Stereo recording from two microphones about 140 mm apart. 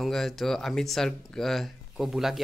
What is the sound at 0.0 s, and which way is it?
Speech, 5° left (ahead or behind).